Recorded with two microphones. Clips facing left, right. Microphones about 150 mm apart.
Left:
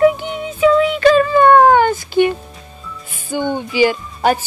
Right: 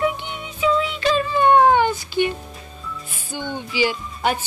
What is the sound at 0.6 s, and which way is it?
Speech, 55° left (ahead or behind).